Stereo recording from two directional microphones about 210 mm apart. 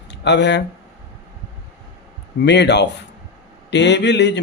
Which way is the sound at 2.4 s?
55° left (ahead or behind).